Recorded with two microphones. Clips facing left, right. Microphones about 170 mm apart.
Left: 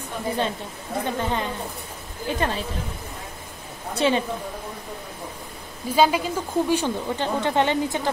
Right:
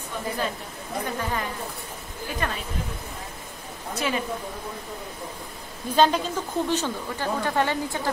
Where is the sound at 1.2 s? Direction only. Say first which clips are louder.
Left 4 dB; 25° left (ahead or behind).